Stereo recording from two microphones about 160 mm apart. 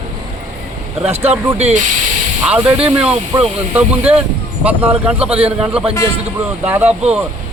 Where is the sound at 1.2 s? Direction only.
40° right (ahead or behind).